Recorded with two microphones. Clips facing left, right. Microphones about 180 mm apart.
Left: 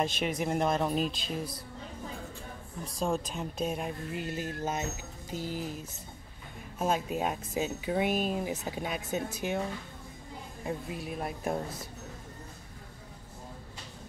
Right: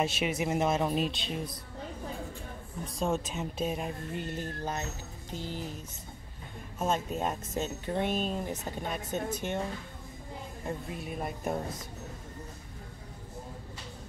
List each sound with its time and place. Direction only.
0.0 s speech: 5° right (ahead or behind)
2.8 s speech: centre (ahead or behind)
4.5 s speech: 15° left (ahead or behind)
6.8 s speech: 5° left (ahead or behind)
10.6 s speech: centre (ahead or behind)